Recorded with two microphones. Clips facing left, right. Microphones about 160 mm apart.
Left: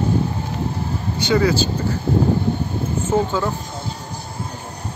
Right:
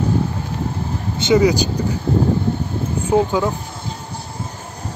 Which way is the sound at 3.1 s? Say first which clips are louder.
Right 4 dB; 15° right (ahead or behind).